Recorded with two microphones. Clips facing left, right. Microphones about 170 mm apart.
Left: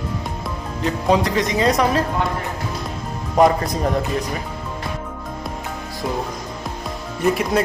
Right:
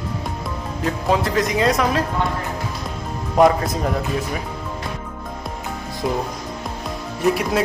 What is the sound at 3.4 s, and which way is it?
Speech, centre (ahead or behind).